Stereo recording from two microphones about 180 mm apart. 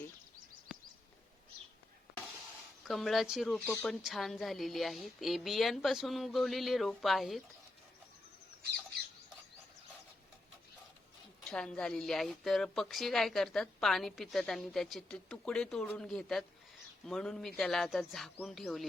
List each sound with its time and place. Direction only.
2.8 s a woman's voice: centre (ahead or behind)
11.4 s a woman's voice: 5° left (ahead or behind)